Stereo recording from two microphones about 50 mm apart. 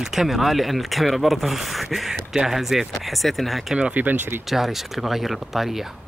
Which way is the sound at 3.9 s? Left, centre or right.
Right.